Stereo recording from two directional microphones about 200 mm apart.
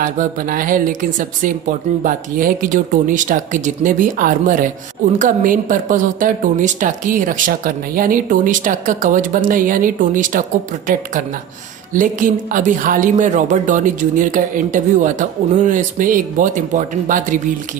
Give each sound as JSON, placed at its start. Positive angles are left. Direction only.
{"t": 0.0, "sound": "speech", "side_deg": -45}
{"t": 11.9, "sound": "speech", "side_deg": -40}